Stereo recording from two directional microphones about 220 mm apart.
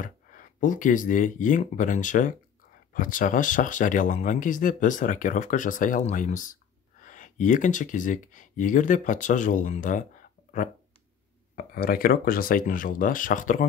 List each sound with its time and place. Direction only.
0.0 s speech: 35° left (ahead or behind)
11.5 s speech: 40° left (ahead or behind)